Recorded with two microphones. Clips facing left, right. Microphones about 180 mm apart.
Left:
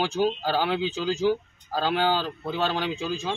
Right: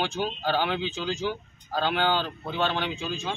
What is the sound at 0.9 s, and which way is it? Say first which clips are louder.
Speech: left 6 dB; 35° left (ahead or behind).